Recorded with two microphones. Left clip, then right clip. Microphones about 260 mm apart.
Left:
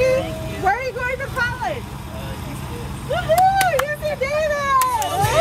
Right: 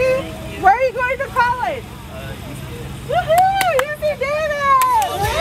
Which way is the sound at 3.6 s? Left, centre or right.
Centre.